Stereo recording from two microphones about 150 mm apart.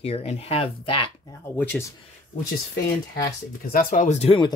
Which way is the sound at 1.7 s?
Centre (ahead or behind).